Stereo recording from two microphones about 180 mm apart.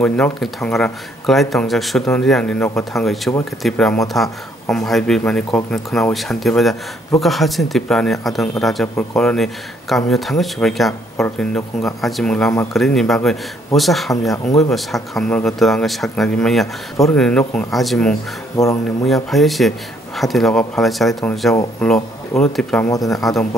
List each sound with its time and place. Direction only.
0.0 s speech: 5° left (ahead or behind)
18.6 s speech: 20° left (ahead or behind)
19.0 s speech: centre (ahead or behind)
22.8 s speech: 20° left (ahead or behind)